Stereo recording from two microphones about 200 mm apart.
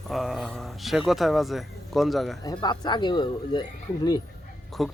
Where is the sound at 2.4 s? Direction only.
20° left (ahead or behind).